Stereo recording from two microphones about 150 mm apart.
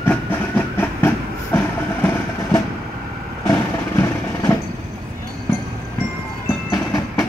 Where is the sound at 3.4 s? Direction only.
20° left (ahead or behind).